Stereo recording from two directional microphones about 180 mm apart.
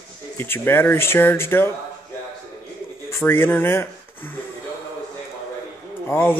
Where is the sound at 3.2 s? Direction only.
10° left (ahead or behind).